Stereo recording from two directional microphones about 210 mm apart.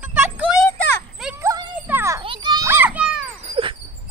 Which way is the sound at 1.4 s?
15° right (ahead or behind).